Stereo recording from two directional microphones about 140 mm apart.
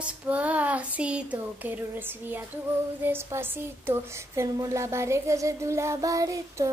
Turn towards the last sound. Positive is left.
turn(degrees=-25)  # may be behind; listen again after turning